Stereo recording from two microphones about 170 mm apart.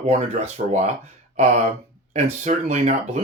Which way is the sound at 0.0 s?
40° right (ahead or behind).